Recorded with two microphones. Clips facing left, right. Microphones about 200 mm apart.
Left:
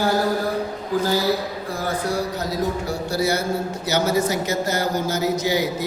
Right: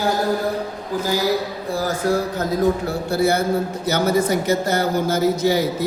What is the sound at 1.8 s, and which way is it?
A man's voice, 50° right (ahead or behind).